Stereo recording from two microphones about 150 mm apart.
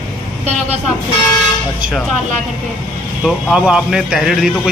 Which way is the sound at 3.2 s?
5° right (ahead or behind).